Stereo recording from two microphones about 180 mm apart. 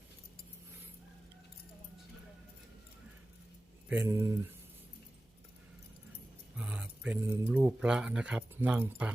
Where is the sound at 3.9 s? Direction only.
15° right (ahead or behind).